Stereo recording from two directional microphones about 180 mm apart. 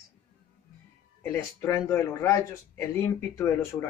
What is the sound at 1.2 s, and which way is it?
Speech, 15° left (ahead or behind).